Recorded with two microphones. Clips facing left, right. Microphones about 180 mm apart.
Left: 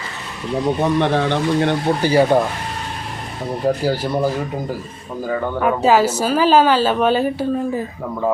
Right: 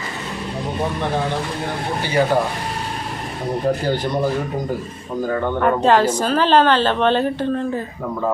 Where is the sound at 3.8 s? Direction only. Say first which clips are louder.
Left 1 dB; 5° left (ahead or behind).